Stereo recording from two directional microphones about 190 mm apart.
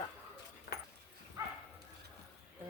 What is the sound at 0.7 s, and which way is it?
Dog, 60° left (ahead or behind).